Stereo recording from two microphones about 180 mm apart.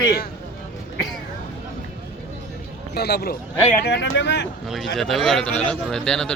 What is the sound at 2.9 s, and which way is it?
Speech, 65° left (ahead or behind).